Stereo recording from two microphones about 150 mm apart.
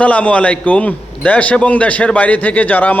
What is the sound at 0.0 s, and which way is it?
A man's voice, 10° left (ahead or behind).